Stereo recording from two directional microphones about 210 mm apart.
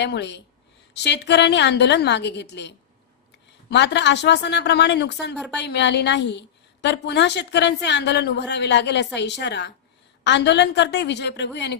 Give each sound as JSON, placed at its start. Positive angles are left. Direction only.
{"t": 0.0, "sound": "a man's voice", "side_deg": 55}